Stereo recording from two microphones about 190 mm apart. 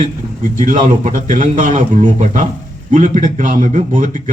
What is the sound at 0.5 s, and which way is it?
Speech, 45° right (ahead or behind).